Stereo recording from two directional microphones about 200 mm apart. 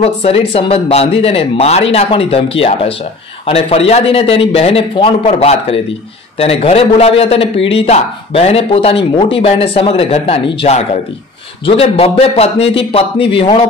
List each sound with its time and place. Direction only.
0.0 s a man's voice: 30° left (ahead or behind)